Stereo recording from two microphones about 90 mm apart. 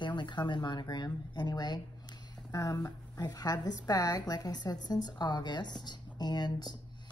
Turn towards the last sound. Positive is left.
turn(degrees=50)  # may be behind; listen again after turning